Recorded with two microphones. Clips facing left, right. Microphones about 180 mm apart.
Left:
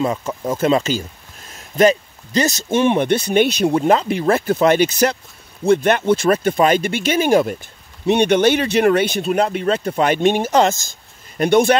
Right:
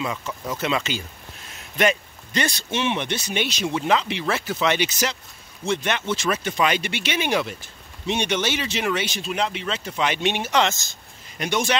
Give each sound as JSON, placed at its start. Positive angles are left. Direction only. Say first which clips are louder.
{"t": 0.0, "sound": "speech", "louder": "left 8 dB", "side_deg": 40}
{"t": 8.1, "sound": "speech", "louder": "left 10 dB", "side_deg": 55}